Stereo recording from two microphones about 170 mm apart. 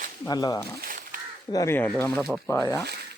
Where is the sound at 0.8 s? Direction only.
55° right (ahead or behind).